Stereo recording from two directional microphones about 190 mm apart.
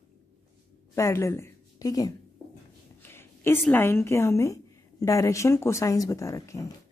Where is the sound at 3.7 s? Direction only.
10° left (ahead or behind).